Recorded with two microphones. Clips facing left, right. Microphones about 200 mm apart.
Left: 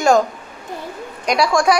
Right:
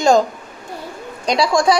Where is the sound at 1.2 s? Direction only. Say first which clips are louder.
Even; 30° right (ahead or behind).